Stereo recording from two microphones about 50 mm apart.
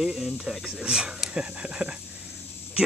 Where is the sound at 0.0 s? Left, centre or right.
Centre.